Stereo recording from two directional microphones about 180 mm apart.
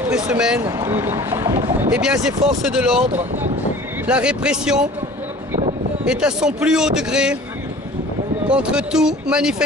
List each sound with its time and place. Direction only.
0.1 s a man's voice: 5° right (ahead or behind)
4.1 s a man's voice: 5° right (ahead or behind)
6.0 s a man's voice: 5° right (ahead or behind)
8.5 s a man's voice: 5° right (ahead or behind)